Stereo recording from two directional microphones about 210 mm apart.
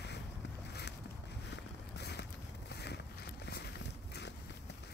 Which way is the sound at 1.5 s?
50° left (ahead or behind).